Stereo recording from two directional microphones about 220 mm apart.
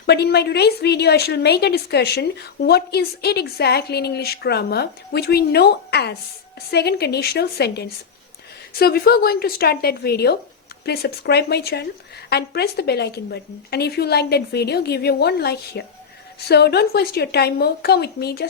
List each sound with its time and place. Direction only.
0.0 s a woman's voice: 50° left (ahead or behind)